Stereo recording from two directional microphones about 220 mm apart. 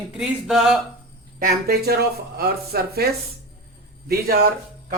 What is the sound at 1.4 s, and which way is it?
A man's voice, 45° right (ahead or behind).